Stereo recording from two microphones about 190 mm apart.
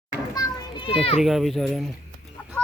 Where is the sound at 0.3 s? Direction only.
25° left (ahead or behind).